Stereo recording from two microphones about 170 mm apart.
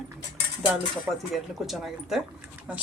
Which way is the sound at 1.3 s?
Centre (ahead or behind).